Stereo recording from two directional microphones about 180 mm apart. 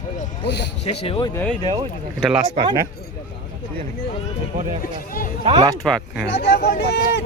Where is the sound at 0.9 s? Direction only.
30° left (ahead or behind).